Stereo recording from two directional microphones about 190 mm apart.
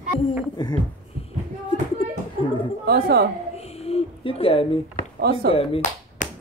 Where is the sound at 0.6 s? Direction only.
20° left (ahead or behind).